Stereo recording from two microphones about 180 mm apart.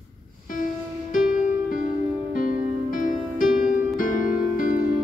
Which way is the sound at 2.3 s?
50° left (ahead or behind).